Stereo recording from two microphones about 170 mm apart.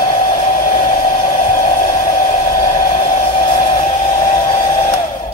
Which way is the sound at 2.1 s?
50° left (ahead or behind).